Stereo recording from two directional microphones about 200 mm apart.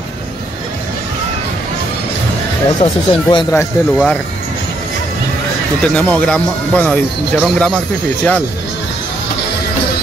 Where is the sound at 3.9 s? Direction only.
5° left (ahead or behind).